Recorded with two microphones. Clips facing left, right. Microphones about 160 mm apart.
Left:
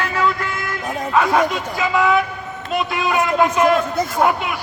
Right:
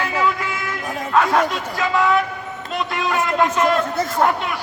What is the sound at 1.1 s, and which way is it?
A man's voice, 5° left (ahead or behind).